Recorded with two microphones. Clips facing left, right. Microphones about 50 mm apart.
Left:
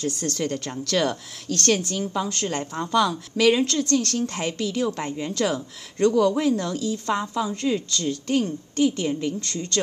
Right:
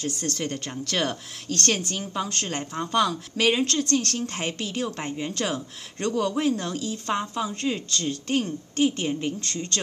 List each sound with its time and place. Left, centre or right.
0.0 s a woman's voice: right